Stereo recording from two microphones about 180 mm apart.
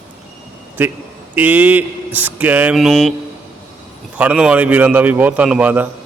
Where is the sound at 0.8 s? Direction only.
10° right (ahead or behind).